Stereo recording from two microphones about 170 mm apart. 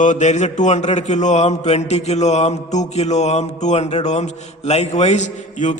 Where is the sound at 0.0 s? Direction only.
45° left (ahead or behind).